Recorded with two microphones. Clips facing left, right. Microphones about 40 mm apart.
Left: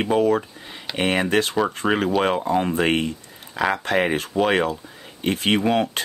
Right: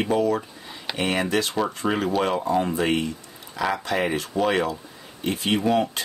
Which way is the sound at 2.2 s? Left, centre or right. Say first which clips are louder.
Left 2 dB; left.